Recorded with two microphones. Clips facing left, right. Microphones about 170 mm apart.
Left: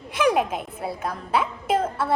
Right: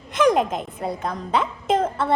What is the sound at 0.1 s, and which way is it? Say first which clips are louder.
A woman's voice: right 3 dB; 10° left (ahead or behind).